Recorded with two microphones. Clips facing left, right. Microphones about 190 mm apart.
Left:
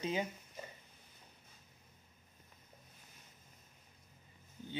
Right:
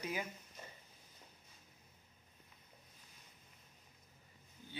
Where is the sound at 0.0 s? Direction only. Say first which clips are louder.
Left 5 dB; 25° left (ahead or behind).